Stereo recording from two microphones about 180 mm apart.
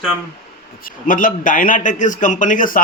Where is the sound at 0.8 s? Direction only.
50° left (ahead or behind).